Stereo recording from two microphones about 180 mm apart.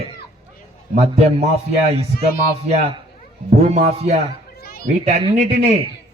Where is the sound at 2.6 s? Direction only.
35° right (ahead or behind).